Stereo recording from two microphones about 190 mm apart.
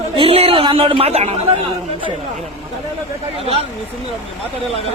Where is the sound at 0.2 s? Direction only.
30° right (ahead or behind).